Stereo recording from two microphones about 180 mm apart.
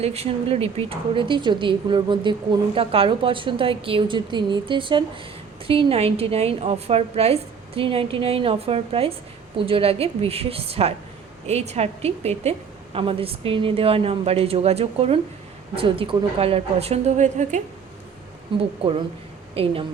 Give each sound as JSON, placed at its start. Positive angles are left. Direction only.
{"t": 0.0, "sound": "a woman's voice", "side_deg": -35}
{"t": 18.5, "sound": "a woman's voice", "side_deg": -30}